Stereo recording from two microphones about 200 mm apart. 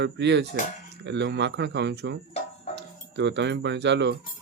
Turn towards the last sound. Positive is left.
turn(degrees=-60)  # may be behind; listen again after turning